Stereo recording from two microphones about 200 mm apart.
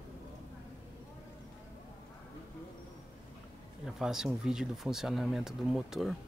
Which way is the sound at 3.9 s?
Centre (ahead or behind).